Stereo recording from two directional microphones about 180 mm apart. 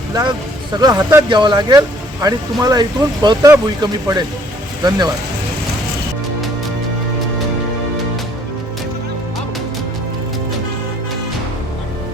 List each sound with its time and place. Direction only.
0.1 s speech: 25° right (ahead or behind)